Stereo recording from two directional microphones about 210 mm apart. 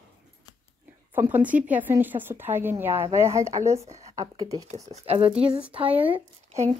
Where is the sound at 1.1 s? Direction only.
10° right (ahead or behind).